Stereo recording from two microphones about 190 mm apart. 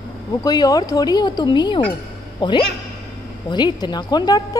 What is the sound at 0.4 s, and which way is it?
Speech, 20° left (ahead or behind).